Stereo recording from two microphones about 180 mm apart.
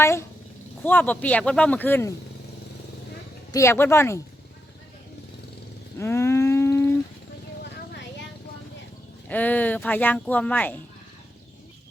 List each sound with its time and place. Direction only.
0.0 s speech: 15° left (ahead or behind)
3.5 s speech: 15° left (ahead or behind)
6.0 s livestock: 15° left (ahead or behind)
9.3 s speech: 10° left (ahead or behind)